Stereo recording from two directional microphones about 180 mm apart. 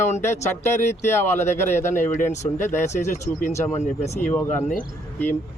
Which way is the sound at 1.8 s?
45° left (ahead or behind).